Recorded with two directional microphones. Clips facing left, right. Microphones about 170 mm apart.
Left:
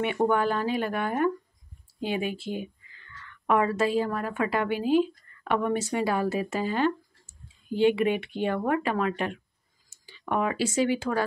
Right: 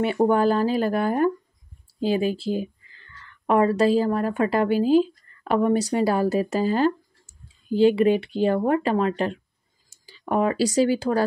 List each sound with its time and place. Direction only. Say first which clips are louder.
0.0 s speech: right 5 dB; 35° right (ahead or behind)